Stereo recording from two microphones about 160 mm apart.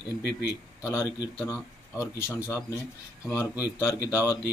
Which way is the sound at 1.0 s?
20° left (ahead or behind).